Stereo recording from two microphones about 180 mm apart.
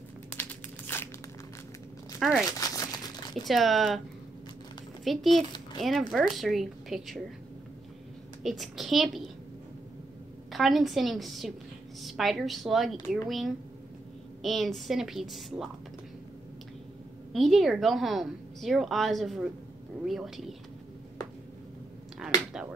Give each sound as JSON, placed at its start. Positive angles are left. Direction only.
{"t": 0.3, "sound": "crumpling", "side_deg": 10}
{"t": 2.1, "sound": "a sound", "side_deg": 0}
{"t": 2.6, "sound": "crumpling", "side_deg": 20}
{"t": 3.4, "sound": "a woman's voice", "side_deg": 0}
{"t": 5.0, "sound": "a woman's voice", "side_deg": 0}
{"t": 8.4, "sound": "a woman's voice", "side_deg": 0}
{"t": 10.5, "sound": "a woman's voice", "side_deg": 0}
{"t": 17.3, "sound": "a woman's voice", "side_deg": 0}
{"t": 22.5, "sound": "a woman's voice", "side_deg": -5}